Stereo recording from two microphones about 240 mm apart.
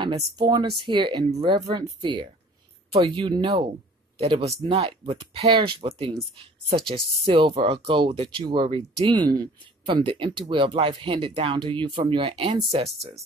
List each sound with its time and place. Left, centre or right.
0.0 s speech: centre